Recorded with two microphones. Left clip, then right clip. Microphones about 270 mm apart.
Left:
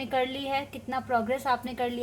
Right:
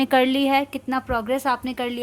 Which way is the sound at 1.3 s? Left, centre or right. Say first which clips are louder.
Right 5 dB; right.